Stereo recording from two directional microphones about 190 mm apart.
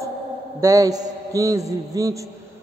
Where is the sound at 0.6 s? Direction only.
15° right (ahead or behind).